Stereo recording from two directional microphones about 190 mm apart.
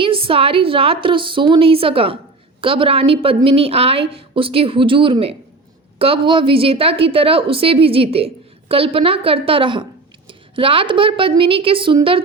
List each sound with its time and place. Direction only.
0.0 s a woman's voice: 30° right (ahead or behind)